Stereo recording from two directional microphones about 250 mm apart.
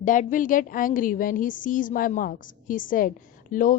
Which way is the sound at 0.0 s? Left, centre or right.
Left.